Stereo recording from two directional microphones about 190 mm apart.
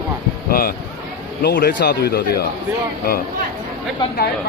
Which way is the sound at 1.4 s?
50° left (ahead or behind).